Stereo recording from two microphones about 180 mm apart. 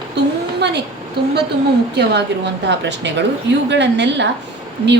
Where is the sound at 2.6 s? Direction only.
75° right (ahead or behind).